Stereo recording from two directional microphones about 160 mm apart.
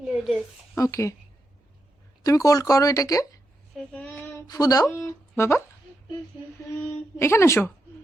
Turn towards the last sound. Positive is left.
turn(degrees=15)  # may be behind; listen again after turning